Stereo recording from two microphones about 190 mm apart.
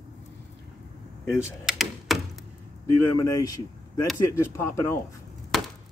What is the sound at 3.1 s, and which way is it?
Speech, 20° left (ahead or behind).